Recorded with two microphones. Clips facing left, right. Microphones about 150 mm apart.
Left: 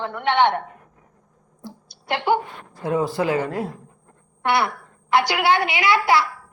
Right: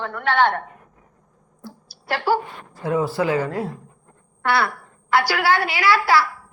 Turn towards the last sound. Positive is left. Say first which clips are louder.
# even
turn(degrees=20)  # may be behind; listen again after turning